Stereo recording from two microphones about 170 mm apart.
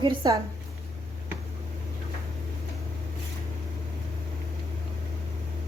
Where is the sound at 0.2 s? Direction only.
25° right (ahead or behind).